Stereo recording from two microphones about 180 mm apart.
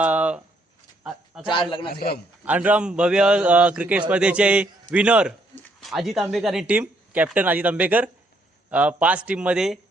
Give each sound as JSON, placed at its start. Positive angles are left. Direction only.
{"t": 0.0, "sound": "a sound", "side_deg": -10}
{"t": 1.5, "sound": "a man's voice", "side_deg": 25}
{"t": 1.9, "sound": "a man's voice", "side_deg": 60}
{"t": 2.4, "sound": "a man's voice", "side_deg": -10}